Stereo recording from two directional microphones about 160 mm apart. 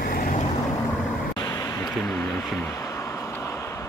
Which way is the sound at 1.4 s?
20° left (ahead or behind).